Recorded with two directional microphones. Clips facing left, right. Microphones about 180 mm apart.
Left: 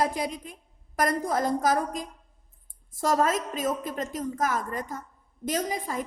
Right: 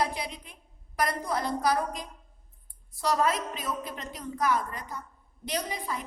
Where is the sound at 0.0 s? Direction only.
45° left (ahead or behind).